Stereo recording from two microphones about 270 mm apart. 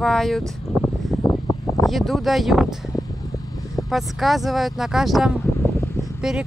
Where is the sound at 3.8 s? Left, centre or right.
Centre.